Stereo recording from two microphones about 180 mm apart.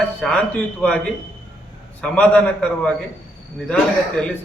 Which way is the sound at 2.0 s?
5° left (ahead or behind).